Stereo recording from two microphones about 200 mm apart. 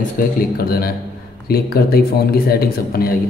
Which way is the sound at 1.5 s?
50° left (ahead or behind).